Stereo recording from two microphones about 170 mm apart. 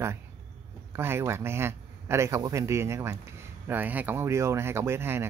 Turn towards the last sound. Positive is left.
turn(degrees=-15)  # may be behind; listen again after turning